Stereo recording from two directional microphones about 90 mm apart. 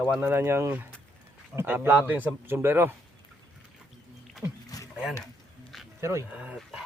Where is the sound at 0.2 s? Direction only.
25° right (ahead or behind).